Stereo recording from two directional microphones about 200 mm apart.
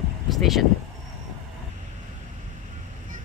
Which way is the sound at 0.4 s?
Centre (ahead or behind).